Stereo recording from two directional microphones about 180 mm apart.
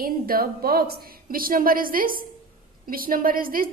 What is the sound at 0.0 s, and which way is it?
A woman's voice, 55° right (ahead or behind).